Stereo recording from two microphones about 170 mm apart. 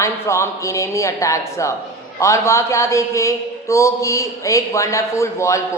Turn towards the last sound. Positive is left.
turn(degrees=15)  # may be behind; listen again after turning